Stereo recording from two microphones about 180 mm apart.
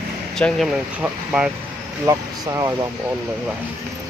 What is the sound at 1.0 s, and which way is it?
Speech, 5° right (ahead or behind).